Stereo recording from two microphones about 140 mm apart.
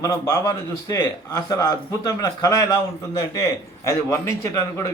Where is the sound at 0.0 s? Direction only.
25° left (ahead or behind).